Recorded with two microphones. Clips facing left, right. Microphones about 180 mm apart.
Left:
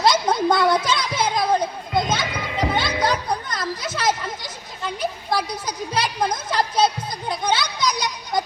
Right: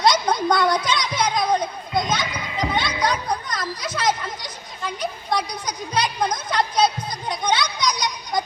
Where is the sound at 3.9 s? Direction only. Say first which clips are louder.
Right 1 dB; 5° left (ahead or behind).